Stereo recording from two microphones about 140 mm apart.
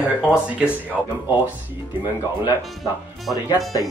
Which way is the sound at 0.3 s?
5° left (ahead or behind).